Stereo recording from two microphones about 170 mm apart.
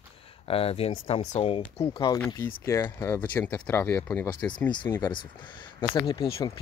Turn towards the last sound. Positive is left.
turn(degrees=25)  # may be behind; listen again after turning